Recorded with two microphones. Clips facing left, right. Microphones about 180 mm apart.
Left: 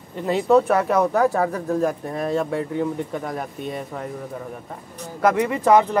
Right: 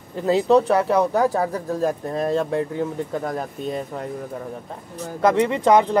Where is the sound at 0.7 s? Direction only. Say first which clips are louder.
Even; 30° right (ahead or behind).